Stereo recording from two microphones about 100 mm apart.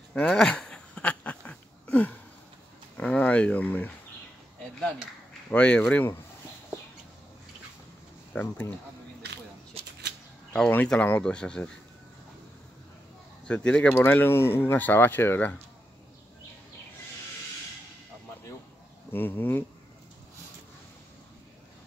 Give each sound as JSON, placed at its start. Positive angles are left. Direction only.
{"t": 0.1, "sound": "speech", "side_deg": 15}
{"t": 0.4, "sound": "a sound", "side_deg": 5}
{"t": 5.5, "sound": "speech", "side_deg": 10}
{"t": 8.3, "sound": "speech", "side_deg": 15}
{"t": 9.8, "sound": "shuffling cards", "side_deg": -90}
{"t": 10.7, "sound": "speech", "side_deg": 15}
{"t": 13.5, "sound": "speech", "side_deg": 10}
{"t": 19.1, "sound": "speech", "side_deg": 20}